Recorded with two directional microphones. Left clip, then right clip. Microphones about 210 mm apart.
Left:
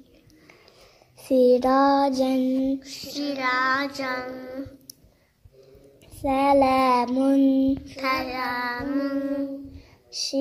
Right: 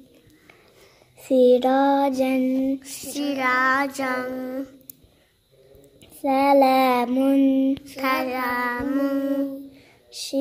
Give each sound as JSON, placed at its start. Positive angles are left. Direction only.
{"t": 1.2, "sound": "child singing", "side_deg": -5}
{"t": 2.8, "sound": "child singing", "side_deg": -45}
{"t": 6.2, "sound": "child singing", "side_deg": -15}
{"t": 7.8, "sound": "child singing", "side_deg": -50}